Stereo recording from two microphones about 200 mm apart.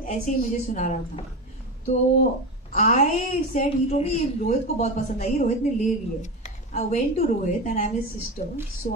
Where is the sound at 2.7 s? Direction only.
35° left (ahead or behind).